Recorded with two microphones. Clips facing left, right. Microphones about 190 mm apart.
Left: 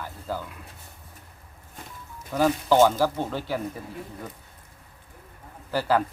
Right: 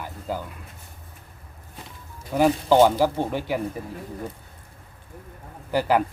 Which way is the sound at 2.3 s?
15° right (ahead or behind).